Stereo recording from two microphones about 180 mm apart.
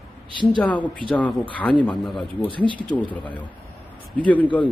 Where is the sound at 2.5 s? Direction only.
30° right (ahead or behind).